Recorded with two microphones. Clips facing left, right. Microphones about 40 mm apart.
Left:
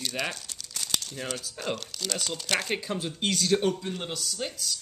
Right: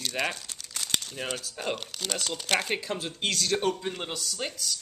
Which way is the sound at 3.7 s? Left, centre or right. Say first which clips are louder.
Even; centre.